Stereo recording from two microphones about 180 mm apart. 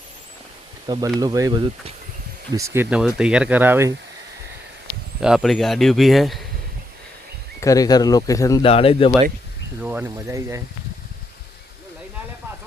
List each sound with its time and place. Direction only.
0.9 s speech: 20° right (ahead or behind)
3.2 s speech: 5° right (ahead or behind)
5.2 s speech: 5° right (ahead or behind)
7.6 s speech: 20° left (ahead or behind)
8.6 s speech: 30° left (ahead or behind)
9.8 s speech: 10° right (ahead or behind)